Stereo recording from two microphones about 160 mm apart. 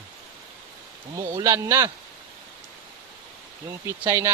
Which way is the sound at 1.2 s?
20° right (ahead or behind).